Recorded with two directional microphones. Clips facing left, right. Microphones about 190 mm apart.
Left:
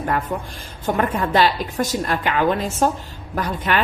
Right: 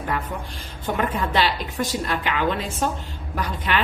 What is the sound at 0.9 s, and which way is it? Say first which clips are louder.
A woman's voice: left 4 dB; 45° left (ahead or behind).